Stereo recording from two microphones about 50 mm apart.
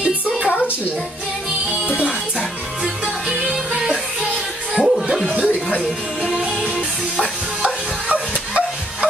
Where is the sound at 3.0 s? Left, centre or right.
Centre.